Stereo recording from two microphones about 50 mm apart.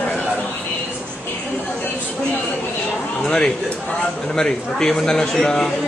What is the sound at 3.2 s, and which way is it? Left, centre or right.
A man's voice, centre.